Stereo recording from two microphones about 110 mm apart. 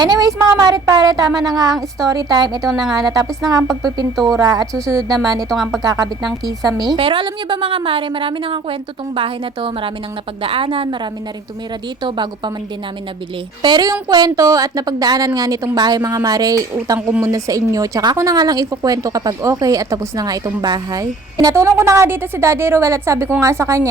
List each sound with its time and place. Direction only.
0.0 s a woman's voice: 35° right (ahead or behind)
2.6 s speech: centre (ahead or behind)
2.9 s a woman's voice: 35° right (ahead or behind)
4.2 s speech: centre (ahead or behind)
4.4 s a woman's voice: 30° right (ahead or behind)
5.5 s speech: centre (ahead or behind)
5.8 s a woman's voice: 35° right (ahead or behind)
7.0 s a woman's voice: 50° right (ahead or behind)
13.6 s a woman's voice: 40° right (ahead or behind); by 23.9 s 25° right (ahead or behind)